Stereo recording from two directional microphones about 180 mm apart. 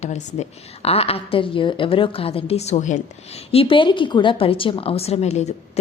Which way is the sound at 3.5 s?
30° left (ahead or behind).